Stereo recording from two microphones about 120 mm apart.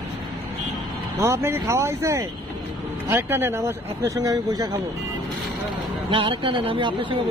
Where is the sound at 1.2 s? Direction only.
20° right (ahead or behind).